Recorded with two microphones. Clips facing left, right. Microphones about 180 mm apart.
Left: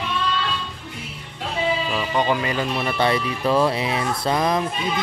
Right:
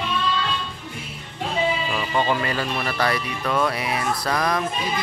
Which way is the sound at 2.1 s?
15° left (ahead or behind).